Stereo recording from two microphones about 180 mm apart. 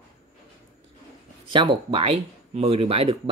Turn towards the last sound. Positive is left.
turn(degrees=-35)  # may be behind; listen again after turning